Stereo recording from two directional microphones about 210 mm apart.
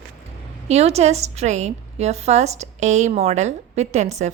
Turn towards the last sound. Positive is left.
turn(degrees=-35)  # may be behind; listen again after turning